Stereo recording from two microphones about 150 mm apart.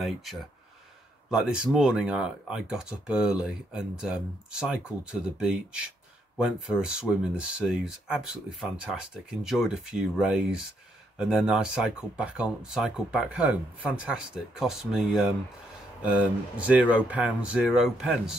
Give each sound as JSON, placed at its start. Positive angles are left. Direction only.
{"t": 0.0, "sound": "speech", "side_deg": 0}